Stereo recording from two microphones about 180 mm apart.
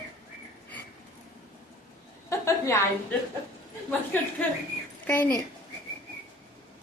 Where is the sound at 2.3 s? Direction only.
15° left (ahead or behind).